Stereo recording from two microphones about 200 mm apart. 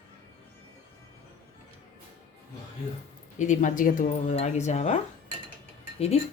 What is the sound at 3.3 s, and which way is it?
Speech, 40° left (ahead or behind).